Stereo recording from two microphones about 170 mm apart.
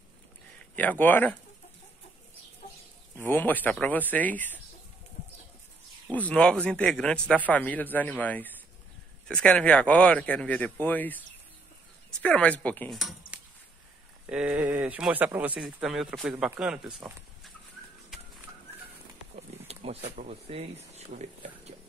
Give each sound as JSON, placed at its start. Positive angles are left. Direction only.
{"t": 0.6, "sound": "speech", "side_deg": 10}
{"t": 3.2, "sound": "speech", "side_deg": 10}
{"t": 6.1, "sound": "speech", "side_deg": 10}
{"t": 13.3, "sound": "a sound", "side_deg": -10}
{"t": 14.2, "sound": "speech", "side_deg": -5}
{"t": 19.3, "sound": "speech", "side_deg": -35}